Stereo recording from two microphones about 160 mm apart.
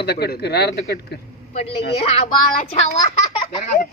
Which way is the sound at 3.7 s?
10° left (ahead or behind).